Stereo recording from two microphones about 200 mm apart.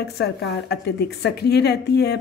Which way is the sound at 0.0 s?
55° left (ahead or behind).